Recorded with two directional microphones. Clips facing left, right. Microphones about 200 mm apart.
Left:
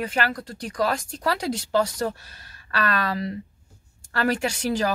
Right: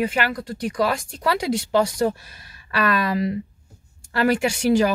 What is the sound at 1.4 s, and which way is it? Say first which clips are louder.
Speech: right 4 dB; 10° right (ahead or behind).